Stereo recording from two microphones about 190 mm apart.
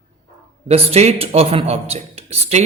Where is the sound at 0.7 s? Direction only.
35° right (ahead or behind).